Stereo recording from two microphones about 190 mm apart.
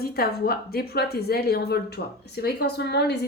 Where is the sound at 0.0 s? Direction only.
55° left (ahead or behind).